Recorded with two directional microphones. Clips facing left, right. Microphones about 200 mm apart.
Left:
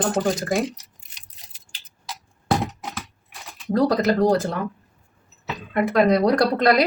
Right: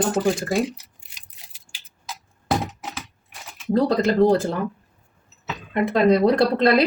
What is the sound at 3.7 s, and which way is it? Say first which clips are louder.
Speech: even; 25° right (ahead or behind).